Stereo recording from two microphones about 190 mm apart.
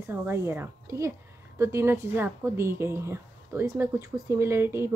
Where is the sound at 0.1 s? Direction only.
10° right (ahead or behind).